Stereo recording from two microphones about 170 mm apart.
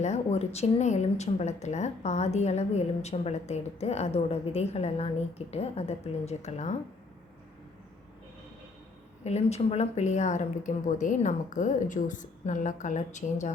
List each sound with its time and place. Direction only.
0.0 s a woman's voice: 40° left (ahead or behind)
9.2 s speech: 40° left (ahead or behind)